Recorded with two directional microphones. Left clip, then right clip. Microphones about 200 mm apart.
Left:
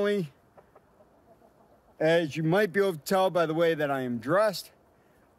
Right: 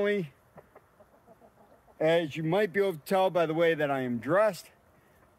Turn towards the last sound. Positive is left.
turn(degrees=15)  # may be behind; listen again after turning